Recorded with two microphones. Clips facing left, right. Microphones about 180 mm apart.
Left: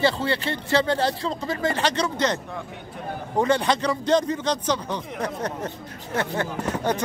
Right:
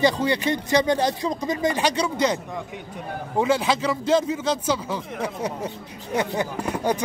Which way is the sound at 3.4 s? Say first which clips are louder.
Even; 5° right (ahead or behind).